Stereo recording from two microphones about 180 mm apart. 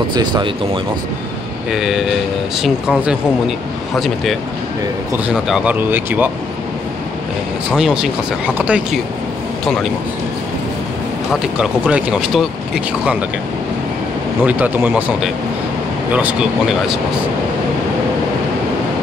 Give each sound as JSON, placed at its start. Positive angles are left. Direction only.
{"t": 0.1, "sound": "speech", "side_deg": -25}
{"t": 1.7, "sound": "speech", "side_deg": -5}
{"t": 7.7, "sound": "speech", "side_deg": -5}
{"t": 11.4, "sound": "speech", "side_deg": -5}
{"t": 14.4, "sound": "speech", "side_deg": -10}